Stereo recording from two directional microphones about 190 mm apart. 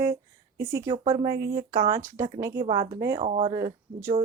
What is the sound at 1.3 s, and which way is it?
Speech, 55° right (ahead or behind).